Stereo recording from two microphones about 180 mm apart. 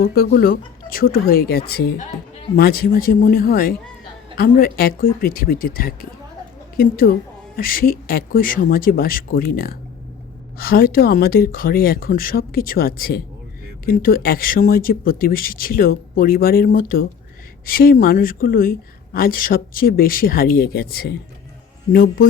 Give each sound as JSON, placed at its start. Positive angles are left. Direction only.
{"t": 0.0, "sound": "speech", "side_deg": 55}